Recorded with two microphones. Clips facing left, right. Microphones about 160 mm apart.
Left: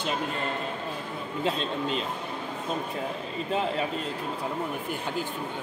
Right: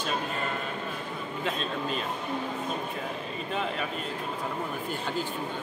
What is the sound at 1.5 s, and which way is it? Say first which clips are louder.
Speech: left 3 dB; 25° left (ahead or behind).